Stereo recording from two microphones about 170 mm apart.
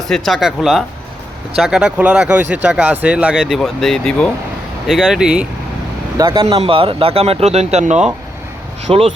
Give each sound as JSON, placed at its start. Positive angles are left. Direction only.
{"t": 0.1, "sound": "speech", "side_deg": 0}
{"t": 6.1, "sound": "speech", "side_deg": -20}